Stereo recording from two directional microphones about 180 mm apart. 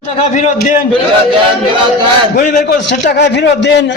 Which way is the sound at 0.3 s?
45° left (ahead or behind).